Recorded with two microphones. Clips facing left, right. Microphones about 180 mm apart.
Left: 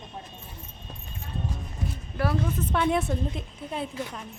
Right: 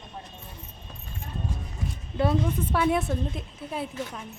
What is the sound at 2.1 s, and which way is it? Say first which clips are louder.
Speech: right 3 dB; 20° right (ahead or behind).